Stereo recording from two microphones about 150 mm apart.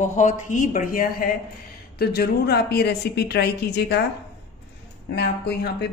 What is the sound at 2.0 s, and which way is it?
A woman's voice, 90° left.